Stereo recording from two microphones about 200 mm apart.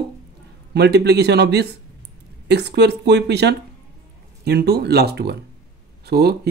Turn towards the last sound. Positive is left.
turn(degrees=-55)  # may be behind; listen again after turning